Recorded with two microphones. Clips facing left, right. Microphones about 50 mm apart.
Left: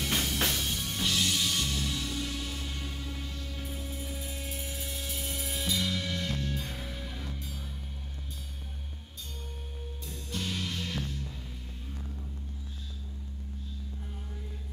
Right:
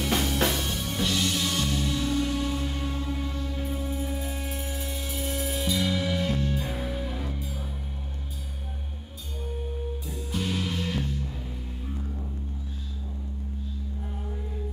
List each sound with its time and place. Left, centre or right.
0.0 s music: centre
10.0 s music: centre